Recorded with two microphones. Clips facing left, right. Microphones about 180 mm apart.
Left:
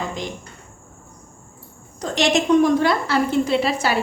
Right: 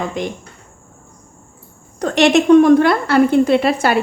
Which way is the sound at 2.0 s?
65° right (ahead or behind).